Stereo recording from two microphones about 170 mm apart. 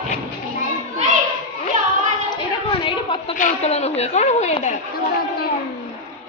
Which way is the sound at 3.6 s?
40° left (ahead or behind).